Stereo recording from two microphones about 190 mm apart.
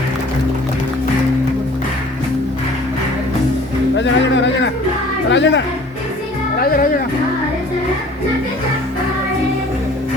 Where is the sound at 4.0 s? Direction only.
70° left (ahead or behind).